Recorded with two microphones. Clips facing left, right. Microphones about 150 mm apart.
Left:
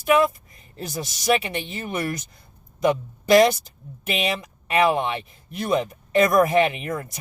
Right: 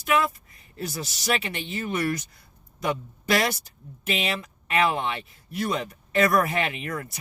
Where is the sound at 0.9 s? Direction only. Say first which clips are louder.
Left 6 dB; 15° left (ahead or behind).